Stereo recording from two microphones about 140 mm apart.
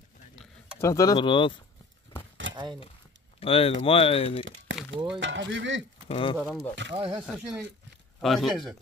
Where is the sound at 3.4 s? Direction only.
40° left (ahead or behind).